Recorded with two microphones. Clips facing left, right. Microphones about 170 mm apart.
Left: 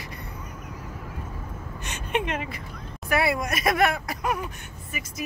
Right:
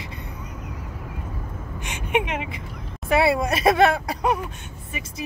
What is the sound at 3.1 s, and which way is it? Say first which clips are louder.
Speech: right 5 dB; 25° right (ahead or behind).